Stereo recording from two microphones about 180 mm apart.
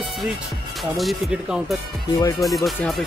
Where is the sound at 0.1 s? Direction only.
Centre (ahead or behind).